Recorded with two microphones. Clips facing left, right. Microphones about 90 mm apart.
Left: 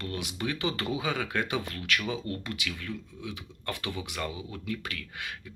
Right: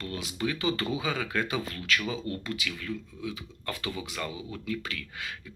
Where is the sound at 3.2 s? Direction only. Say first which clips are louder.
Right 1 dB; 60° left (ahead or behind).